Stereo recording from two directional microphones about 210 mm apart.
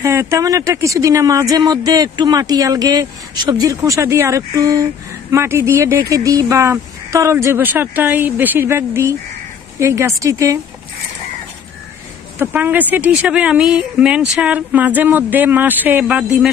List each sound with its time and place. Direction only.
0.0 s speech: 15° right (ahead or behind)
12.4 s speech: 10° right (ahead or behind)